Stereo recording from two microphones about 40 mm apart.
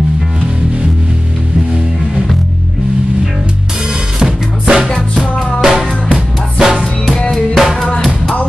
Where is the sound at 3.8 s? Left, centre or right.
Centre.